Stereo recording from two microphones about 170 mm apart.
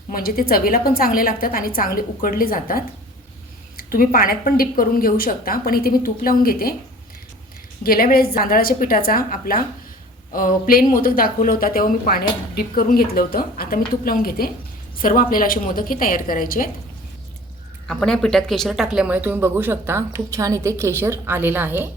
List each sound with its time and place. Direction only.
0.1 s a woman's voice: 60° left (ahead or behind)
3.9 s a woman's voice: 55° left (ahead or behind)
7.9 s a woman's voice: 60° left (ahead or behind)
17.8 s speech: 5° left (ahead or behind); by 21.8 s 10° right (ahead or behind)